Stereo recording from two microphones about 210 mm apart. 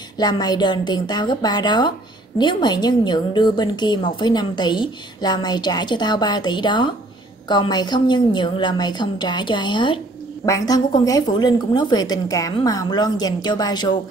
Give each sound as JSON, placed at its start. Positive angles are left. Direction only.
{"t": 0.2, "sound": "a woman's voice", "side_deg": 20}